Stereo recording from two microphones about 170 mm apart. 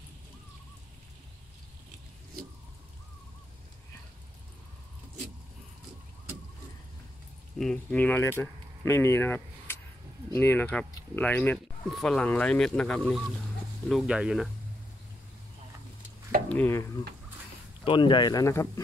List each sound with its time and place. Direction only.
7.5 s speech: 5° left (ahead or behind)
16.4 s speech: 10° left (ahead or behind)
17.8 s speech: 30° left (ahead or behind)